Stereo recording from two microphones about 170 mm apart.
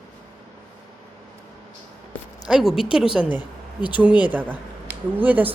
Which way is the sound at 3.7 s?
25° left (ahead or behind).